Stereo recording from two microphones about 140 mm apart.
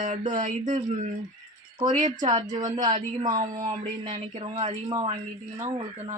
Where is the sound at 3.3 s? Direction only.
30° right (ahead or behind).